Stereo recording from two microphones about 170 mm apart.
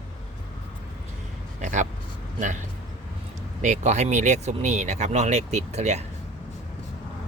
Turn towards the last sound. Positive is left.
turn(degrees=-40)  # may be behind; listen again after turning